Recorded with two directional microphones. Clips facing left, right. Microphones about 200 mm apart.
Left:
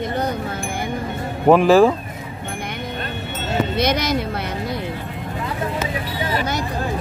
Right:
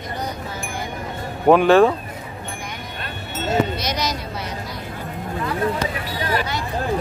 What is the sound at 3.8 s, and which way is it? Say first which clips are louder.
Speech: left 6 dB; 55° left (ahead or behind).